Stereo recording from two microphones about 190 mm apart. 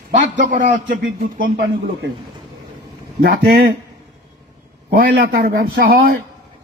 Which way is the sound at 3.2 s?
50° right (ahead or behind).